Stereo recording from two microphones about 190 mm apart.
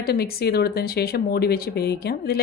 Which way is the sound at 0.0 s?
55° left (ahead or behind).